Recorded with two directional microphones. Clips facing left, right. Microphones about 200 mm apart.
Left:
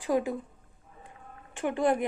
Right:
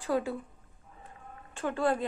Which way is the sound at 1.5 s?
15° left (ahead or behind).